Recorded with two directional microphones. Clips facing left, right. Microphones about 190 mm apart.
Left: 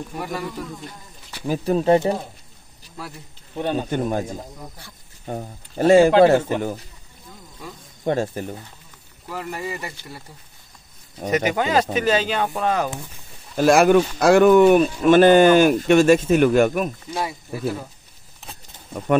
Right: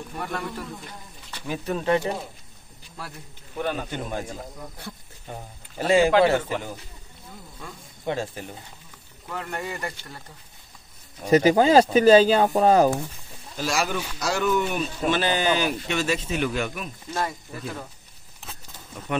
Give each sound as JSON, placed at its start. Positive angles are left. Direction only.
{"t": 0.2, "sound": "speech", "side_deg": 5}
{"t": 1.5, "sound": "speech", "side_deg": 35}
{"t": 3.0, "sound": "speech", "side_deg": 0}
{"t": 3.5, "sound": "a man's voice", "side_deg": 25}
{"t": 3.9, "sound": "speech", "side_deg": 45}
{"t": 5.2, "sound": "speech", "side_deg": 45}
{"t": 8.0, "sound": "speech", "side_deg": 45}
{"t": 9.3, "sound": "speech", "side_deg": 5}
{"t": 11.2, "sound": "speech", "side_deg": -35}
{"t": 13.6, "sound": "speech", "side_deg": 55}
{"t": 17.1, "sound": "speech", "side_deg": 10}